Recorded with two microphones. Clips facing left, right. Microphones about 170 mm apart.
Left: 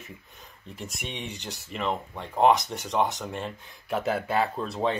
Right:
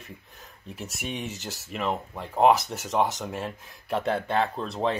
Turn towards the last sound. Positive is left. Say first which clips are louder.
# even
turn(degrees=0)  # may be behind; listen again after turning